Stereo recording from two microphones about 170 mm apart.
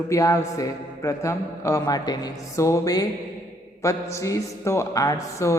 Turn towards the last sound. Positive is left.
turn(degrees=20)  # may be behind; listen again after turning